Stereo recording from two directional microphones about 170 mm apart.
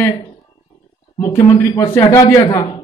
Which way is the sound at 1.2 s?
20° left (ahead or behind).